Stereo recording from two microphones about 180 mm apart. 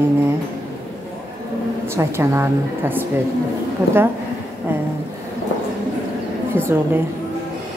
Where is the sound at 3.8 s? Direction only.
15° right (ahead or behind).